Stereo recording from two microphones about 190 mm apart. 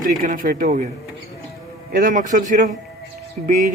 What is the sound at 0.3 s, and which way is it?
Speech, 45° right (ahead or behind).